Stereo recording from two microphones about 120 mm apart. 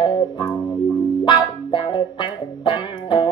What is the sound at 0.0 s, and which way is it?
Music, 40° left (ahead or behind).